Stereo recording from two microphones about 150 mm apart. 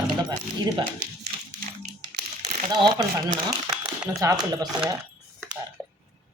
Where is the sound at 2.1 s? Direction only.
55° right (ahead or behind).